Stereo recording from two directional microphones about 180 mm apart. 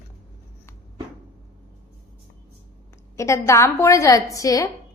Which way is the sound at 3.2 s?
15° left (ahead or behind).